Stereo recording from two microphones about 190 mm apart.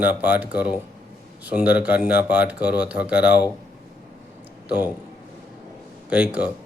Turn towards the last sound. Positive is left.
turn(degrees=-5)  # may be behind; listen again after turning